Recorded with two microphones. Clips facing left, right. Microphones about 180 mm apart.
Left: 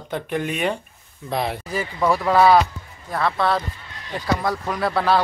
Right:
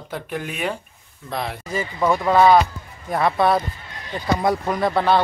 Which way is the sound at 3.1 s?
15° right (ahead or behind).